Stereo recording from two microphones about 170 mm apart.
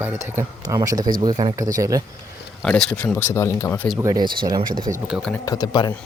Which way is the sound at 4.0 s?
20° right (ahead or behind).